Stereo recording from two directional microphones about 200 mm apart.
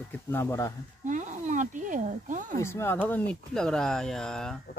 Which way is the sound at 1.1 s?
40° right (ahead or behind).